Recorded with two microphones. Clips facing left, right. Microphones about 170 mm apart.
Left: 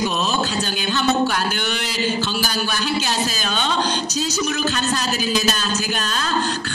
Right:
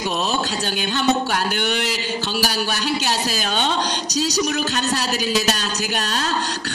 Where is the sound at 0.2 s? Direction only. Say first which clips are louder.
Left 1 dB; 65° right (ahead or behind).